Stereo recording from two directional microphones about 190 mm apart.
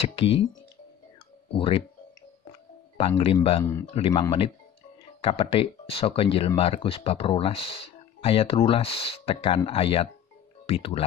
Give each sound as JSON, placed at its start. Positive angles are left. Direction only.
{"t": 0.0, "sound": "speech", "side_deg": 30}
{"t": 1.5, "sound": "speech", "side_deg": 30}
{"t": 3.3, "sound": "speech", "side_deg": 25}
{"t": 3.8, "sound": "speech", "side_deg": 30}